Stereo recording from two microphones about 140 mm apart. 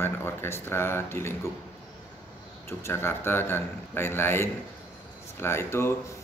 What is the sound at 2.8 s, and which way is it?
Speech, 15° left (ahead or behind).